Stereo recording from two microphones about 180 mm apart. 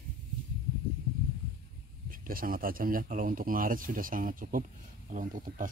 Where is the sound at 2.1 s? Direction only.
50° right (ahead or behind).